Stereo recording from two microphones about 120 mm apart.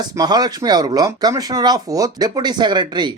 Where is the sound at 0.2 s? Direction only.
35° right (ahead or behind).